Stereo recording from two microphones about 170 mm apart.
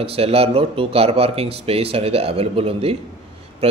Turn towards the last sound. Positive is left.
turn(degrees=-40)  # may be behind; listen again after turning